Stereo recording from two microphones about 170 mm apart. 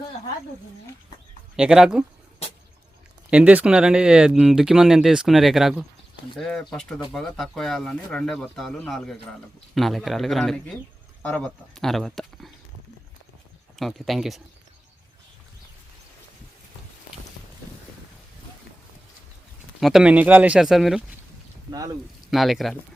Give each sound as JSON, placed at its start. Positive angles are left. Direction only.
{"t": 1.5, "sound": "speech", "side_deg": -5}
{"t": 3.2, "sound": "speech", "side_deg": -5}
{"t": 13.7, "sound": "speech", "side_deg": 0}
{"t": 19.8, "sound": "speech", "side_deg": -5}
{"t": 22.3, "sound": "speech", "side_deg": 0}